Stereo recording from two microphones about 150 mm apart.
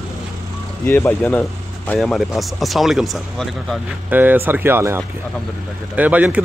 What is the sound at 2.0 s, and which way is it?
Speech, centre (ahead or behind).